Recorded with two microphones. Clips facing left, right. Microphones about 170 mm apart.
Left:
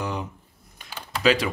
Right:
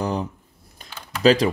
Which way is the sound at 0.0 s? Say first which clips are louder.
Right 5 dB; 35° right (ahead or behind).